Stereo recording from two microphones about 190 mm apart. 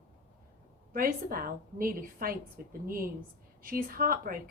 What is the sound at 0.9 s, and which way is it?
A woman's voice, 50° right (ahead or behind).